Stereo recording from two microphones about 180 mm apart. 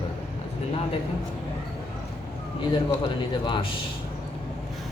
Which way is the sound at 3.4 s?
25° left (ahead or behind).